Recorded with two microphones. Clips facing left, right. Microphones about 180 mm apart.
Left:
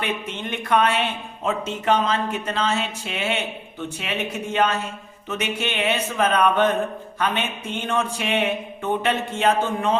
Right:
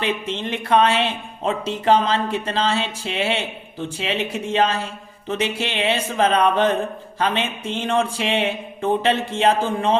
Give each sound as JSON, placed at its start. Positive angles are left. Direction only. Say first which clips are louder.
{"t": 0.0, "sound": "speech", "louder": "right 4 dB", "side_deg": -30}